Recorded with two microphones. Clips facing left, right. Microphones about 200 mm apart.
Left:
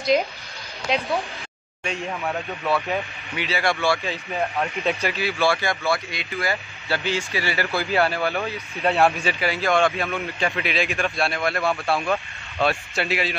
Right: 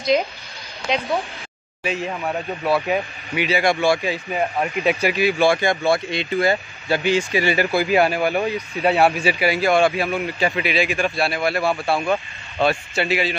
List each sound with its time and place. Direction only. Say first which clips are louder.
0.1 s speech: right 1 dB; centre (ahead or behind); by 8.6 s 15° right (ahead or behind)
8.8 s speech: right 2 dB; centre (ahead or behind)
9.2 s speech: right 5 dB; 15° right (ahead or behind)